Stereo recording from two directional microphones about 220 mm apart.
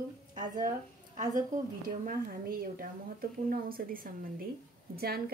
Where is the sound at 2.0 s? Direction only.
40° right (ahead or behind).